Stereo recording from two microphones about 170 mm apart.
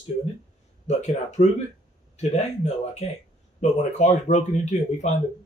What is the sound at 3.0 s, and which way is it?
Speech, 40° left (ahead or behind).